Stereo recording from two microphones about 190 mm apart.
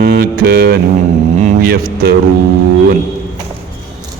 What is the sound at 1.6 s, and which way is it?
Speech, 50° right (ahead or behind).